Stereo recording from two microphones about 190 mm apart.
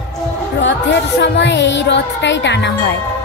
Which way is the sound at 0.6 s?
70° left (ahead or behind).